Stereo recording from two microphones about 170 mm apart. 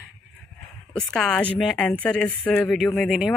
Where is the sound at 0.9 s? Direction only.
5° left (ahead or behind).